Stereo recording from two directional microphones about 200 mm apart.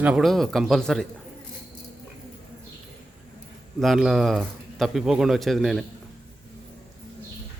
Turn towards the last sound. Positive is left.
turn(degrees=0)  # may be behind; listen again after turning